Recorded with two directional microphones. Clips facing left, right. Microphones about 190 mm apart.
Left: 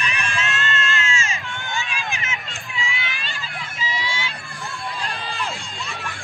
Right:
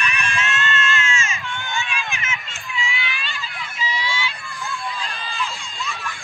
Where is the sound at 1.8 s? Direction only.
40° left (ahead or behind).